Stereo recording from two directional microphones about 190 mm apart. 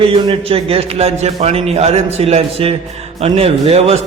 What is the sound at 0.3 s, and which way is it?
A man's voice, 30° right (ahead or behind).